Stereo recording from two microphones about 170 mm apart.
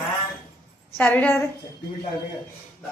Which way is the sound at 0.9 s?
10° left (ahead or behind).